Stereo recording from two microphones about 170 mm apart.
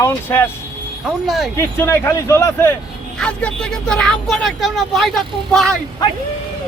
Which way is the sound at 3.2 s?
5° left (ahead or behind).